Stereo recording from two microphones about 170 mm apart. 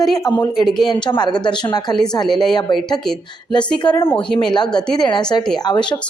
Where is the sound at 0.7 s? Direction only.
Centre (ahead or behind).